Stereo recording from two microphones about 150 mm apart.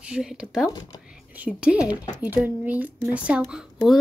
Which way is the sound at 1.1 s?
10° right (ahead or behind).